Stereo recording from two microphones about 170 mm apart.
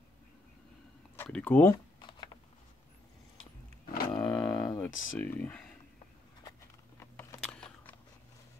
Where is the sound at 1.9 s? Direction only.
25° left (ahead or behind).